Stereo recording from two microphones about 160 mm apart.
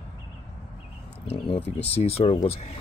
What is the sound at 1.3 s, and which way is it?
Speech, 35° left (ahead or behind).